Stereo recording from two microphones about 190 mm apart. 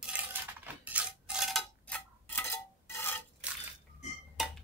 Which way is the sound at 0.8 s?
5° right (ahead or behind).